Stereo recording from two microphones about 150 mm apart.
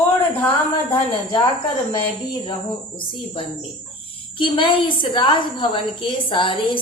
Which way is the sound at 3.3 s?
35° left (ahead or behind).